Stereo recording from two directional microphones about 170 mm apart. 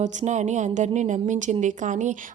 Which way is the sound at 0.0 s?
45° right (ahead or behind).